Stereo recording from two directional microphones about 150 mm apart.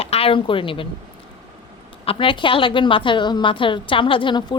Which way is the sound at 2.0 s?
35° left (ahead or behind).